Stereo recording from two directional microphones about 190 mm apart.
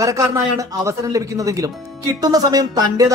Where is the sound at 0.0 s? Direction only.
20° right (ahead or behind).